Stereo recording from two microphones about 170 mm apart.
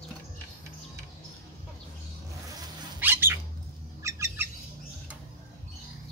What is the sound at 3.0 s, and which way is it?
Cat, 10° right (ahead or behind).